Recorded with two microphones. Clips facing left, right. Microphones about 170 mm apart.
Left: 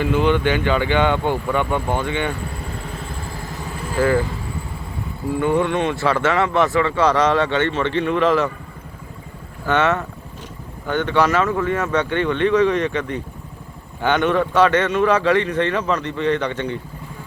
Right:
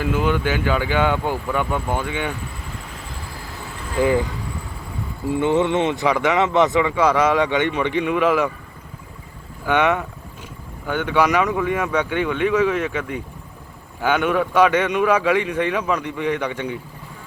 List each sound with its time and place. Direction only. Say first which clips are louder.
0.0 s speech: left 3 dB; 5° right (ahead or behind)
4.0 s speech: even; 15° right (ahead or behind)
5.3 s speech: right 1 dB; 20° right (ahead or behind)
9.6 s speech: even; 10° right (ahead or behind)